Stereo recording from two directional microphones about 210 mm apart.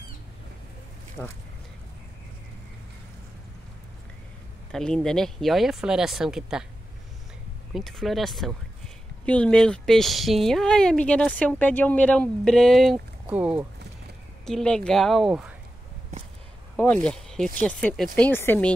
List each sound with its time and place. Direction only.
1.2 s a woman's voice: 5° left (ahead or behind)
4.7 s a woman's voice: 5° left (ahead or behind)
7.7 s a woman's voice: centre (ahead or behind)
16.7 s speech: 5° left (ahead or behind)